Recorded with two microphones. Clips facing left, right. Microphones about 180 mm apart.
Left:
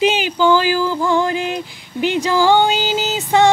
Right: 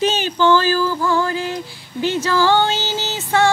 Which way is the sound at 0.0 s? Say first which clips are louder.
Left 2 dB; 10° left (ahead or behind).